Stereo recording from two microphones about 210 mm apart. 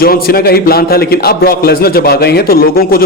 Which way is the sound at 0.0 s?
45° left (ahead or behind).